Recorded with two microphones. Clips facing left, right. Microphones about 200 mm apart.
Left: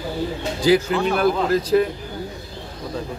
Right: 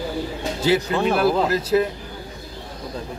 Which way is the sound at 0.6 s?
Centre (ahead or behind).